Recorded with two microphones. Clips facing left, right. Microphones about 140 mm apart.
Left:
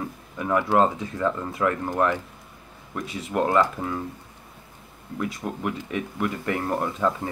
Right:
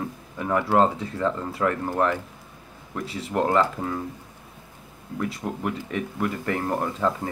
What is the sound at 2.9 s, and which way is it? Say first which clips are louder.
Speech: even; 30° right (ahead or behind).